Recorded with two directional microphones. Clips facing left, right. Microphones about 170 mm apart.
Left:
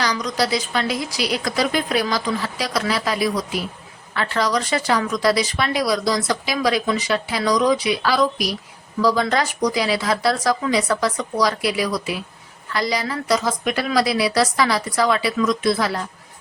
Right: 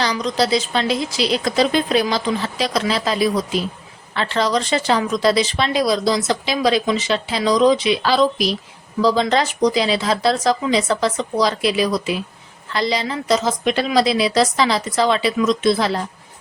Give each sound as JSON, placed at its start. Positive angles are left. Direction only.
{"t": 0.0, "sound": "a woman's voice", "side_deg": -25}